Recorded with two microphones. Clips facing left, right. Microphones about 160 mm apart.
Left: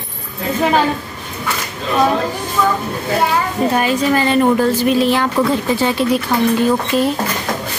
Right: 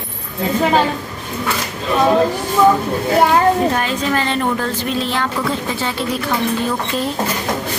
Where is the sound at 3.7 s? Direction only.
10° left (ahead or behind).